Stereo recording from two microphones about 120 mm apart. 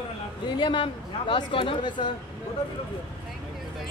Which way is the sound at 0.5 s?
40° left (ahead or behind).